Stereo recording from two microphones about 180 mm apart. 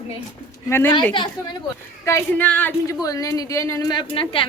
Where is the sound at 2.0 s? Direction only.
15° left (ahead or behind); by 4.4 s 30° left (ahead or behind).